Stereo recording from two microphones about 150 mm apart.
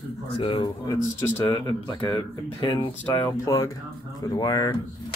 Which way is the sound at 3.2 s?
20° left (ahead or behind).